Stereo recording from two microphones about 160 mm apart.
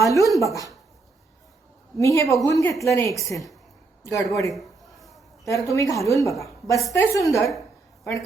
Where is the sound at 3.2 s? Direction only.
Centre (ahead or behind).